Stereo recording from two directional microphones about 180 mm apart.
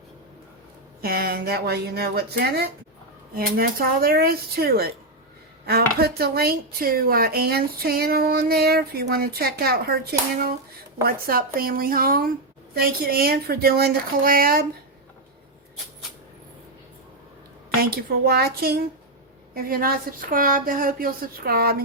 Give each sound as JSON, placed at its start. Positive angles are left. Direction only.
{"t": 1.0, "sound": "a woman's voice", "side_deg": -55}
{"t": 17.7, "sound": "a woman's voice", "side_deg": -60}